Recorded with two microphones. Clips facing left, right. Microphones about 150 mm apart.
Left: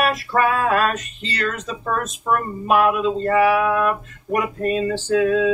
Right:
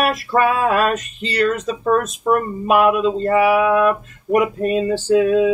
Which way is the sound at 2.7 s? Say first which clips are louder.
Right 2 dB; 15° right (ahead or behind).